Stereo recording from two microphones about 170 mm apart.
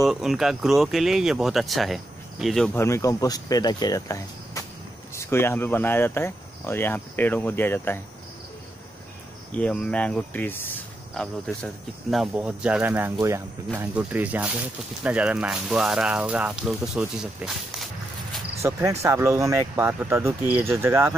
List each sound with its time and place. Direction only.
0.0 s speech: centre (ahead or behind)
2.8 s speech: 15° left (ahead or behind)
9.5 s speech: 5° left (ahead or behind)
18.6 s speech: 15° right (ahead or behind)